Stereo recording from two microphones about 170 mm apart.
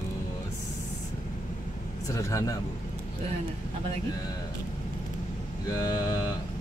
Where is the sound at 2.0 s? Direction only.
20° left (ahead or behind).